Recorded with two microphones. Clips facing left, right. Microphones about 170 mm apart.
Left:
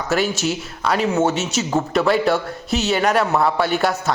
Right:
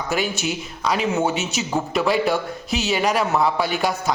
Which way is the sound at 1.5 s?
Centre (ahead or behind).